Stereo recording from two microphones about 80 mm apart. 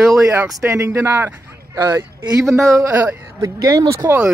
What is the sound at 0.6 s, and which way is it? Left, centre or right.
Speech, right.